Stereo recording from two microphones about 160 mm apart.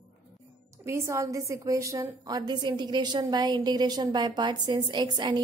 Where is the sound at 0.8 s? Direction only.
20° right (ahead or behind).